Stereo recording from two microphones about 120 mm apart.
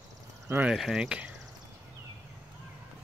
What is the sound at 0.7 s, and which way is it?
Speech, 5° right (ahead or behind).